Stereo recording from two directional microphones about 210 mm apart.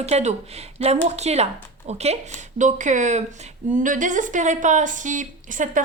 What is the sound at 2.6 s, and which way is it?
A woman's voice, 35° right (ahead or behind).